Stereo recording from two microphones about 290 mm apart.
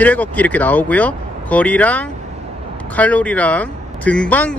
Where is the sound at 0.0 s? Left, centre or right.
Centre.